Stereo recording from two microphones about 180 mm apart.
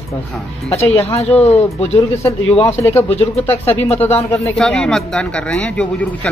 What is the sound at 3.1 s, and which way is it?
Speech, 35° left (ahead or behind).